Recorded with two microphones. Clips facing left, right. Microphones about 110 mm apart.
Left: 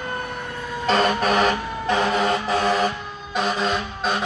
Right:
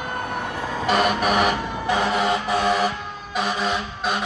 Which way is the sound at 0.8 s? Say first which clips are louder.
Left 1 dB; 10° right (ahead or behind).